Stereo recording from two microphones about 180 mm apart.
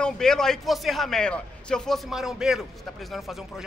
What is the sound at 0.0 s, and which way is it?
A man's voice, 5° left (ahead or behind).